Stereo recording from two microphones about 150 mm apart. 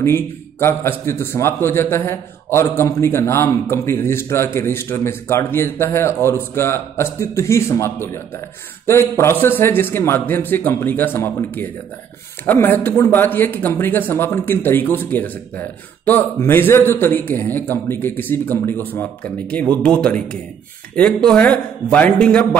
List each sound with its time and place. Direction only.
0.0 s a man's voice: 15° left (ahead or behind)